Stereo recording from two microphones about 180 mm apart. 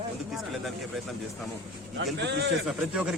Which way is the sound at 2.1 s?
70° right (ahead or behind).